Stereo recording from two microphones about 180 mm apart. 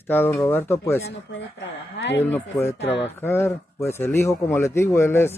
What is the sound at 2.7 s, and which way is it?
Speech, 80° left.